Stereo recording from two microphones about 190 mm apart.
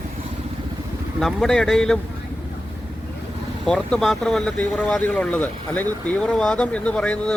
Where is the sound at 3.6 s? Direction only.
5° left (ahead or behind).